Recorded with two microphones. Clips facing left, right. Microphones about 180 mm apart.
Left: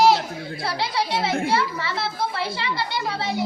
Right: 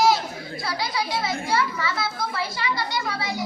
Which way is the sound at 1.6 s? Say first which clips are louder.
Even; 30° left (ahead or behind).